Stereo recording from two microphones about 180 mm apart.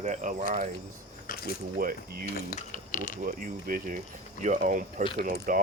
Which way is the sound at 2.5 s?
45° left (ahead or behind).